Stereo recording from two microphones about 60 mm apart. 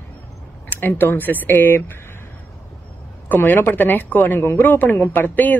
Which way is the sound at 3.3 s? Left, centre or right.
Left.